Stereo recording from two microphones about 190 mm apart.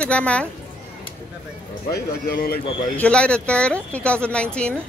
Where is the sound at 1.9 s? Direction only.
55° left (ahead or behind).